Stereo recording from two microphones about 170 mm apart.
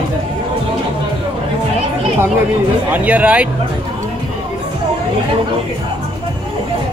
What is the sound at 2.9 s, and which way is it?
Speech, 10° right (ahead or behind).